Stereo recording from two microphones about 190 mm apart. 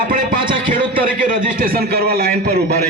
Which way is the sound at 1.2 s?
50° right (ahead or behind).